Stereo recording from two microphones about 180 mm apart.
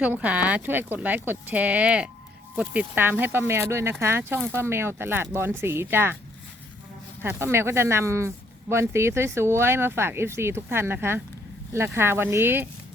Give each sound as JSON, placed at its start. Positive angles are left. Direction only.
{"t": 0.0, "sound": "speech", "side_deg": -10}
{"t": 7.2, "sound": "speech", "side_deg": -15}